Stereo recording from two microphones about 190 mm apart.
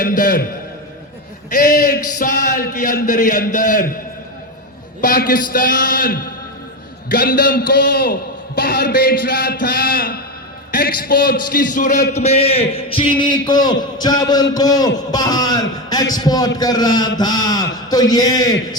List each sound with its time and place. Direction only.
0.2 s a man's voice: 45° left (ahead or behind)
1.5 s a man's voice: 50° left (ahead or behind)
4.9 s a man's voice: 45° left (ahead or behind); by 18.8 s 20° left (ahead or behind)